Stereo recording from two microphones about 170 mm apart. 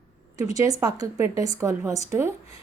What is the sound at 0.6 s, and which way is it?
A woman's voice, 20° right (ahead or behind).